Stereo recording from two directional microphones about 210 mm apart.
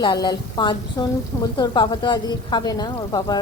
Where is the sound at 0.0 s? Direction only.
20° left (ahead or behind).